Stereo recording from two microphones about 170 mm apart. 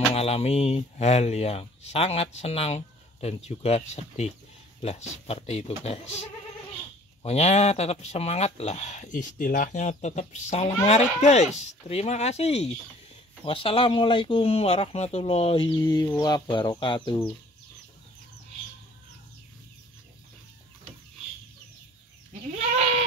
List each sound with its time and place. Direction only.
0.1 s speech: 35° left (ahead or behind)
7.2 s speech: 40° left (ahead or behind)